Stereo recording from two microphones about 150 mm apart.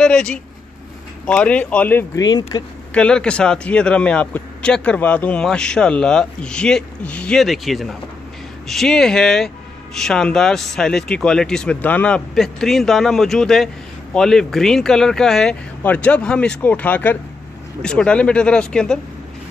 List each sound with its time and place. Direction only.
0.0 s a man's voice: 5° left (ahead or behind)
2.1 s speech: 25° left (ahead or behind)
2.9 s a man's voice: 5° left (ahead or behind)